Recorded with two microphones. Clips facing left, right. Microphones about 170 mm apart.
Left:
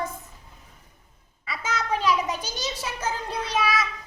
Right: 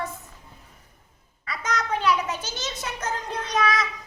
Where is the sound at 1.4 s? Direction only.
5° left (ahead or behind).